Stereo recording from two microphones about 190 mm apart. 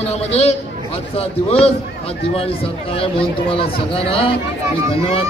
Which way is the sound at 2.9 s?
30° left (ahead or behind).